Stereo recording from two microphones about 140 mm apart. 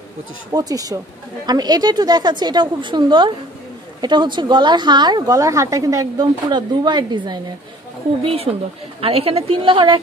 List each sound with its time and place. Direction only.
0.5 s a woman's voice: 25° right (ahead or behind)
8.2 s a woman's voice: 45° right (ahead or behind)